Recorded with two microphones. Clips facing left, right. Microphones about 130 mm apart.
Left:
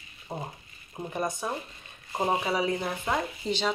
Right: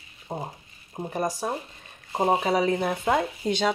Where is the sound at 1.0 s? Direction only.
35° right (ahead or behind).